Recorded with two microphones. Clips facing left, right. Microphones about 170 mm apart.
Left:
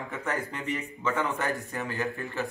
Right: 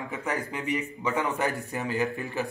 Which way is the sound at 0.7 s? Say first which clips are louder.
Right 2 dB; 15° right (ahead or behind).